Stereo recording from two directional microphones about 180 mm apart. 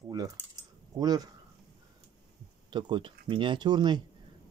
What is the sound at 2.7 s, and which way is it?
Speech, 25° right (ahead or behind).